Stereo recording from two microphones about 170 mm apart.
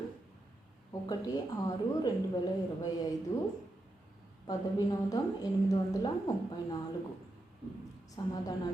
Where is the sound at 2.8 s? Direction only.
20° left (ahead or behind).